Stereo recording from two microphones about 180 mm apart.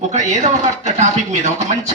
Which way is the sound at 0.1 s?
40° right (ahead or behind).